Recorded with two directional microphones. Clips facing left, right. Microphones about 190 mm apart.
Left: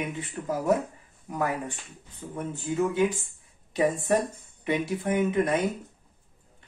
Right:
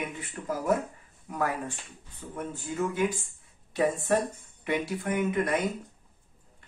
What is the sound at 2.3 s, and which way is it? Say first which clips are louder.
Speech: left 4 dB; 25° left (ahead or behind).